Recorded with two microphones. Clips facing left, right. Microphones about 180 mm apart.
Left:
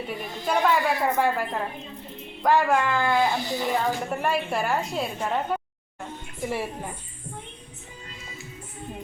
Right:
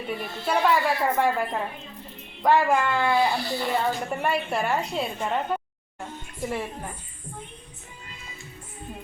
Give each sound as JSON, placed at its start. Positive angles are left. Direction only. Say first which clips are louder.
{"t": 0.4, "sound": "a woman's voice", "louder": "even", "side_deg": -5}
{"t": 3.3, "sound": "a woman's voice", "louder": "left 1 dB", "side_deg": 20}
{"t": 3.8, "sound": "a woman's voice", "louder": "even", "side_deg": 0}